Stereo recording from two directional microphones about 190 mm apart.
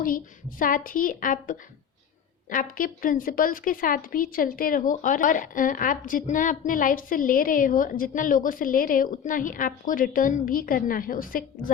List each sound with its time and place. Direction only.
0.6 s a woman's voice: 45° left (ahead or behind)